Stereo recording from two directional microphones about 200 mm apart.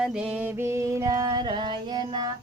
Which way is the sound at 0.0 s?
5° right (ahead or behind).